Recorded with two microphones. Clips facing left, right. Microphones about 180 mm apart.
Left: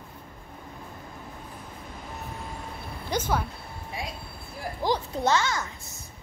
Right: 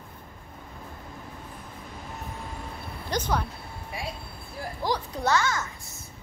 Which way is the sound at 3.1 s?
10° left (ahead or behind).